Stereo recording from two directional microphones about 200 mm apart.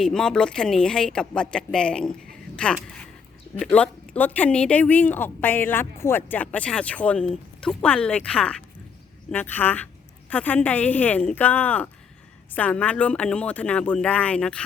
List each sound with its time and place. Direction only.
0.0 s speech: 5° left (ahead or behind)